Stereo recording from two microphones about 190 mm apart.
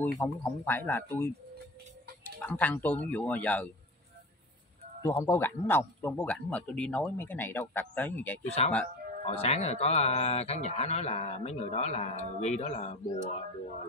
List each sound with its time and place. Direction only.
0.0 s a man's voice: 10° left (ahead or behind)
2.4 s a man's voice: 10° left (ahead or behind)
5.0 s a man's voice: 15° left (ahead or behind)
8.6 s speech: 35° left (ahead or behind)